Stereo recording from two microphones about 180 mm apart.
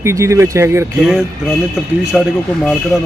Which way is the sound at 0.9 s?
5° right (ahead or behind).